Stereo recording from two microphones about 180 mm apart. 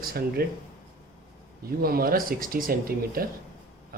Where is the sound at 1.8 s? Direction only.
55° right (ahead or behind).